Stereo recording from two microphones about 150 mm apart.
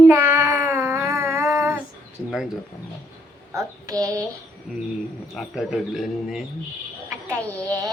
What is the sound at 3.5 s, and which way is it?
Child singing, 20° right (ahead or behind).